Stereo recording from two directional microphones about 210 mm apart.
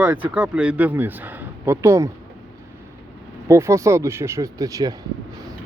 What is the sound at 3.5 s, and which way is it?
Speech, 15° right (ahead or behind).